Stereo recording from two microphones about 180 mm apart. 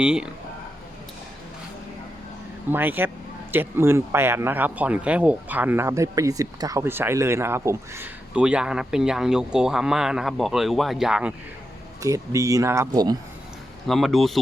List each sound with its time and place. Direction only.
0.0 s speech: 5° right (ahead or behind)
2.6 s speech: 10° right (ahead or behind)
12.0 s speech: 20° right (ahead or behind)
13.8 s speech: centre (ahead or behind)